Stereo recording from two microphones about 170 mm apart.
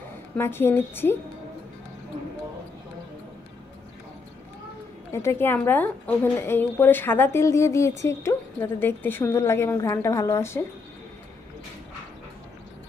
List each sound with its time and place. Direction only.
0.4 s a woman's voice: 15° left (ahead or behind)
5.1 s a woman's voice: 15° left (ahead or behind)